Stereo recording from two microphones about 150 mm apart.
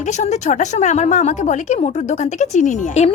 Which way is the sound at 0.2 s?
50° left (ahead or behind).